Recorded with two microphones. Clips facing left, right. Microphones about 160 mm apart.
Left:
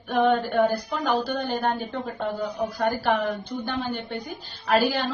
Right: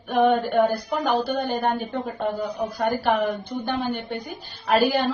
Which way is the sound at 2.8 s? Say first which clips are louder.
Right 2 dB; 20° right (ahead or behind).